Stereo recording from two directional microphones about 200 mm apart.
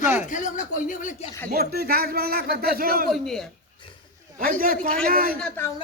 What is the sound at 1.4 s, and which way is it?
Speech, 50° right (ahead or behind).